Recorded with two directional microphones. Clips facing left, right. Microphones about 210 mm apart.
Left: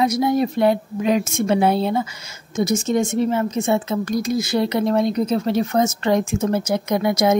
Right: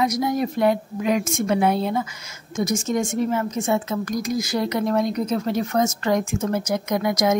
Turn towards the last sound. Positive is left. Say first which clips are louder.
# left 3 dB
turn(degrees=30)  # may be behind; listen again after turning